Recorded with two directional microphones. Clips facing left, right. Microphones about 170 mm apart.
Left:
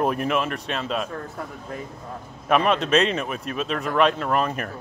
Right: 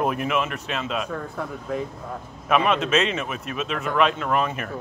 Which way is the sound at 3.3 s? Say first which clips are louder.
Left 1 dB; 35° left (ahead or behind).